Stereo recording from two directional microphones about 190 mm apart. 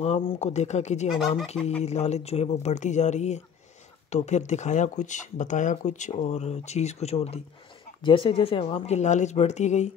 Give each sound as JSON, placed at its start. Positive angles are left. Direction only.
{"t": 0.0, "sound": "speech", "side_deg": 30}